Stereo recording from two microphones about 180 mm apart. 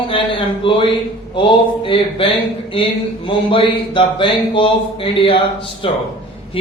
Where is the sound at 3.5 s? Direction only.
30° left (ahead or behind).